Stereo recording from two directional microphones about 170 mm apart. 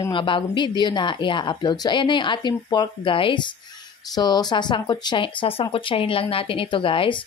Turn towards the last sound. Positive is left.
turn(degrees=30)  # may be behind; listen again after turning